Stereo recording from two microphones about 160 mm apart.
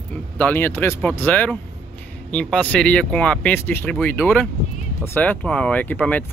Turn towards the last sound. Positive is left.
turn(degrees=10)  # may be behind; listen again after turning